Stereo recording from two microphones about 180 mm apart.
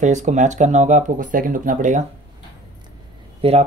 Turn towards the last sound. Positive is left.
turn(degrees=-35)  # may be behind; listen again after turning